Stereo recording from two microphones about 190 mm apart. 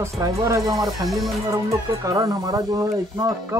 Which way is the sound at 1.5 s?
15° right (ahead or behind).